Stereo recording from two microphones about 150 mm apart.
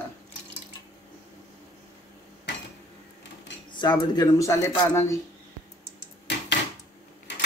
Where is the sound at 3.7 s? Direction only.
30° left (ahead or behind).